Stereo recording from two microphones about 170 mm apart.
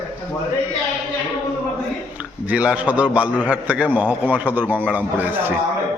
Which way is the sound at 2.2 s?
5° right (ahead or behind).